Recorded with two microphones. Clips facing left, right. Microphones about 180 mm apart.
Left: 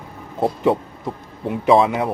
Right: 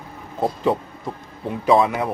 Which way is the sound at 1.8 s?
25° left (ahead or behind).